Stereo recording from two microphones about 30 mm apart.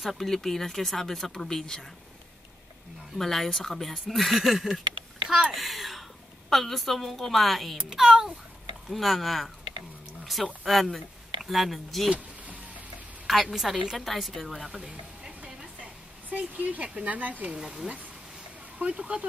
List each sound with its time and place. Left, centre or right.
0.0 s speech: centre
0.3 s speech: centre
3.2 s speech: centre
8.0 s speech: centre
8.9 s speech: centre
12.1 s vehicle: right
13.3 s speech: centre
14.8 s speech: right
16.3 s speech: right
17.6 s speech: centre
18.8 s speech: right